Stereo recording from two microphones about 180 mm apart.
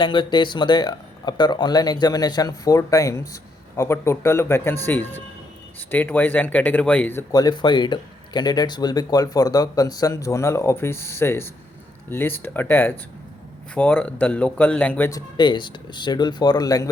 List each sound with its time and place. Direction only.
0.0 s speech: 25° left (ahead or behind); by 15.2 s 10° left (ahead or behind)
15.4 s speech: 25° left (ahead or behind)